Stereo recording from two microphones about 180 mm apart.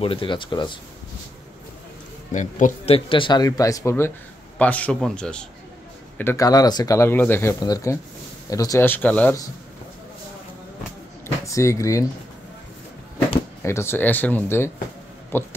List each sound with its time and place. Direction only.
0.0 s speech: 30° left (ahead or behind)
2.3 s speech: 40° left (ahead or behind); by 5.4 s 5° left (ahead or behind)
6.1 s speech: 15° left (ahead or behind)
11.4 s speech: 15° left (ahead or behind)
13.6 s speech: 15° left (ahead or behind)